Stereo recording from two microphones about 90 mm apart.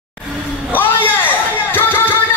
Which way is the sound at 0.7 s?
20° left (ahead or behind).